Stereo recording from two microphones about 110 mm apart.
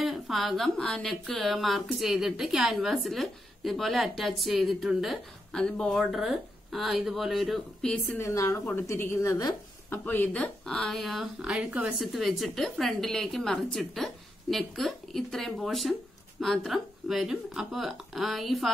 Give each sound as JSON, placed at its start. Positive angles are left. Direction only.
{"t": 0.0, "sound": "speech", "side_deg": 0}
{"t": 8.2, "sound": "a woman's voice", "side_deg": 30}
{"t": 9.8, "sound": "speech", "side_deg": 15}